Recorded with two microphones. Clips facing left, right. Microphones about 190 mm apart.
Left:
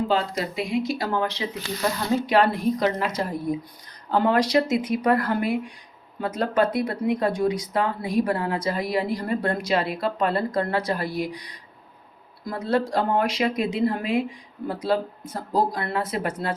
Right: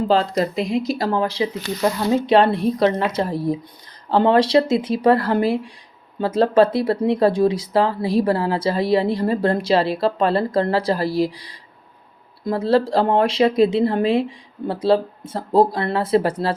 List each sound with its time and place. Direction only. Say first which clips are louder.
0.1 s speech: right 6 dB; 35° right (ahead or behind)